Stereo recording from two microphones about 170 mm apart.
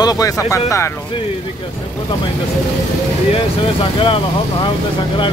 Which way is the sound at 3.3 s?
30° left (ahead or behind).